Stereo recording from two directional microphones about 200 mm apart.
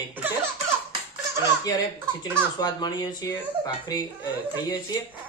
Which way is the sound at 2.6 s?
20° left (ahead or behind).